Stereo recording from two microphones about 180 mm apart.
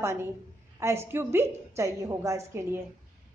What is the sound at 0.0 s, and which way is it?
A woman's voice, 15° right (ahead or behind).